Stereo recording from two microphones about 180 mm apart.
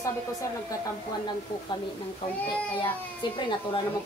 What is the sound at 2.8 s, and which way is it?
A child's voice, 25° left (ahead or behind).